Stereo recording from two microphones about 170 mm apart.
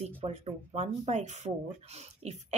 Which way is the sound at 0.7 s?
40° right (ahead or behind).